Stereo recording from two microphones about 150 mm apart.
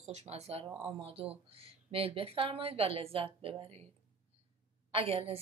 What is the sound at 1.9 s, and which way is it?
Speech, 40° right (ahead or behind).